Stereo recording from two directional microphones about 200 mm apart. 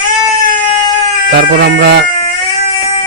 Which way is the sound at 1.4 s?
50° right (ahead or behind).